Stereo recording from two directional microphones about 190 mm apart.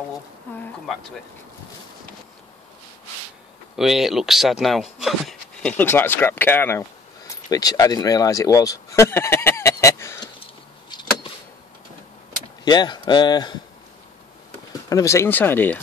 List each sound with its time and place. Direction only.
0.5 s speech: 10° left (ahead or behind)
3.7 s speech: centre (ahead or behind); by 10.3 s 15° left (ahead or behind)
10.4 s a sound: 25° left (ahead or behind)
12.6 s speech: 20° left (ahead or behind)
14.9 s speech: 15° left (ahead or behind)